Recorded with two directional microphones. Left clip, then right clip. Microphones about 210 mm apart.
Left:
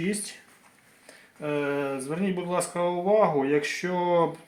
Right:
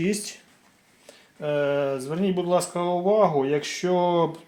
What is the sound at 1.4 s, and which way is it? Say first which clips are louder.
Speech: right 4 dB; 40° right (ahead or behind).